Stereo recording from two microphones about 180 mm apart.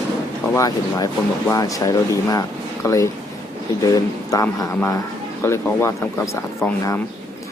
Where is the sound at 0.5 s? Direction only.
20° left (ahead or behind).